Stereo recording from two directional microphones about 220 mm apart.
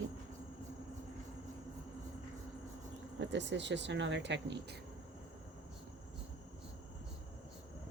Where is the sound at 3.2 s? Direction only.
55° right (ahead or behind).